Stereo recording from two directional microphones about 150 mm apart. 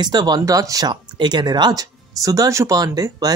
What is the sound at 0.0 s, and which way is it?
Speech, 25° right (ahead or behind).